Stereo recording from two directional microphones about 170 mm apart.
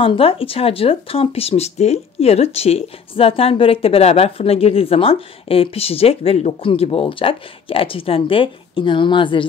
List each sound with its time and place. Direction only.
0.0 s speech: 30° left (ahead or behind)